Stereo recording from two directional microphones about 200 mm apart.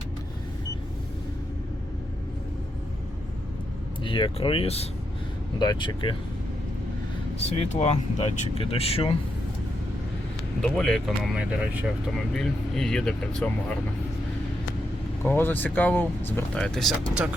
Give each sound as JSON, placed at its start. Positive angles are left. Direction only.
{"t": 4.0, "sound": "speech", "side_deg": 25}
{"t": 7.3, "sound": "speech", "side_deg": 30}
{"t": 10.6, "sound": "speech", "side_deg": 5}
{"t": 15.2, "sound": "speech", "side_deg": 10}